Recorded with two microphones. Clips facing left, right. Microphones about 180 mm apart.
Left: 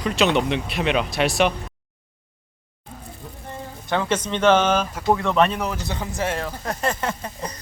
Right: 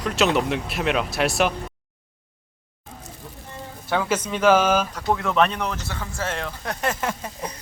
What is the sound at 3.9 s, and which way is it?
Speech, 5° right (ahead or behind).